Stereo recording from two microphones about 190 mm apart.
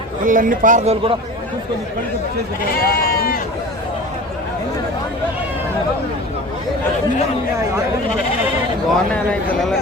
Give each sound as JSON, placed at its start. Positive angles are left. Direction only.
{"t": 0.3, "sound": "speech", "side_deg": -45}
{"t": 2.6, "sound": "speech", "side_deg": 55}
{"t": 8.9, "sound": "a man's voice", "side_deg": 5}